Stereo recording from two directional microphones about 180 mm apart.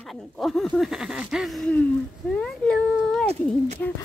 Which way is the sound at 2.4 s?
5° left (ahead or behind).